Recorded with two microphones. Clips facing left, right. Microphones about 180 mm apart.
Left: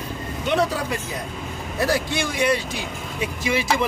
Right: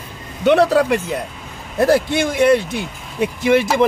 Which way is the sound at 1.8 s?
55° right (ahead or behind).